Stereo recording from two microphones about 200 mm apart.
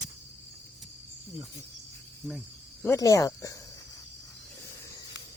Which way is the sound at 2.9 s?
15° left (ahead or behind).